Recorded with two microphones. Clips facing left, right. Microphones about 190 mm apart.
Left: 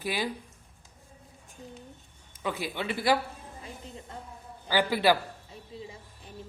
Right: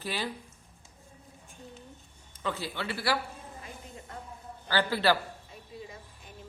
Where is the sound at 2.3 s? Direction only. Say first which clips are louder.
Left 2 dB; 10° left (ahead or behind).